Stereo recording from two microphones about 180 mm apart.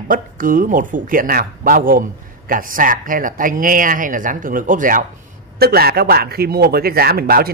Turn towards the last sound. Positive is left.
turn(degrees=-60)  # may be behind; listen again after turning